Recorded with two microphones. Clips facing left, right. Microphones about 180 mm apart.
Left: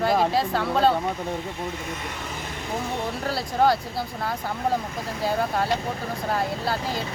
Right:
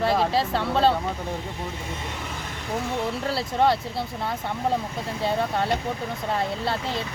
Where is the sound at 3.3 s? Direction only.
Centre (ahead or behind).